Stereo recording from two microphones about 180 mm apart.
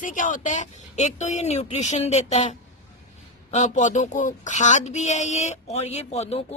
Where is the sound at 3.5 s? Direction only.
40° left (ahead or behind).